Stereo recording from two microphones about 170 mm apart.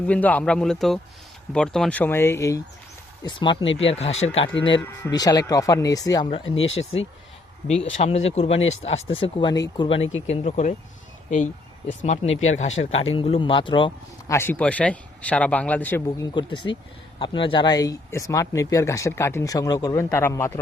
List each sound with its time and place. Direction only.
0.1 s speech: 10° left (ahead or behind)
3.2 s speech: 30° left (ahead or behind)
3.9 s speech: 40° left (ahead or behind); by 6.2 s 20° left (ahead or behind)
6.3 s speech: 35° left (ahead or behind)
8.0 s speech: 40° left (ahead or behind)
10.2 s speech: 40° left (ahead or behind)
11.9 s speech: 45° left (ahead or behind)
14.3 s speech: 15° left (ahead or behind)
16.0 s speech: 20° left (ahead or behind)